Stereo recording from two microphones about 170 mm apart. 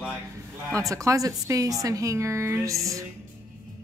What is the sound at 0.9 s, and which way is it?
A woman's voice, 20° right (ahead or behind).